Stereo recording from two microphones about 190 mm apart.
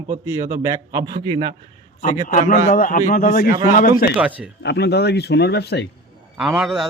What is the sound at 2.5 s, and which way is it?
A man's voice, 45° left (ahead or behind).